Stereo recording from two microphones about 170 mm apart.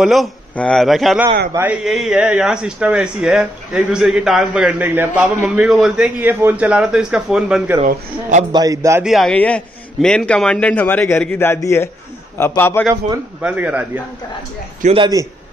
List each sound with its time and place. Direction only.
0.0 s speech: centre (ahead or behind)
1.5 s speech: 10° right (ahead or behind)
7.8 s a man's voice: 45° right (ahead or behind)
8.5 s a man's voice: 20° right (ahead or behind)
9.0 s a man's voice: centre (ahead or behind)
12.8 s a man's voice: 20° right (ahead or behind)
13.4 s speech: 5° right (ahead or behind)
15.0 s a man's voice: 20° right (ahead or behind)